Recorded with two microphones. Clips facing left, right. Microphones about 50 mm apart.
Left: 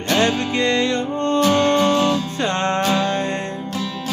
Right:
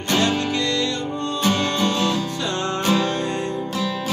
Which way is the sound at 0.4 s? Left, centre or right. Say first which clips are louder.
Left 3 dB; left.